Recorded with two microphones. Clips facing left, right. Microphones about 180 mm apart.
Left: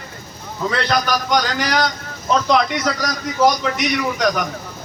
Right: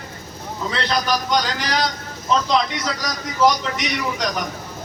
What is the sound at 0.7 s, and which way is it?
A man's voice, 55° left (ahead or behind).